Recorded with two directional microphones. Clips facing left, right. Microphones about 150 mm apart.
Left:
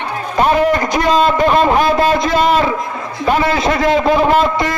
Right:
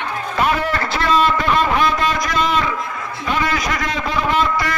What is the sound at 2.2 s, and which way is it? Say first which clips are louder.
A man's voice: left 6 dB; 30° left (ahead or behind).